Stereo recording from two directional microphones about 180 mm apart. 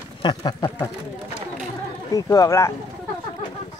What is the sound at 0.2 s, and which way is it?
Speech, 25° left (ahead or behind).